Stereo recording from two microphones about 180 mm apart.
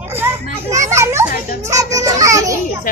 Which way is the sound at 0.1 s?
15° right (ahead or behind).